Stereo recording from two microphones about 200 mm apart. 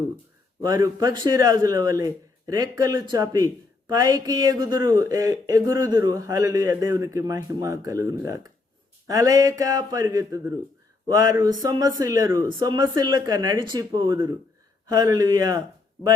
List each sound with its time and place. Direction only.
0.6 s speech: 20° right (ahead or behind)